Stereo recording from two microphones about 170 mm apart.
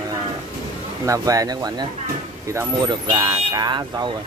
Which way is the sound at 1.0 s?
20° right (ahead or behind).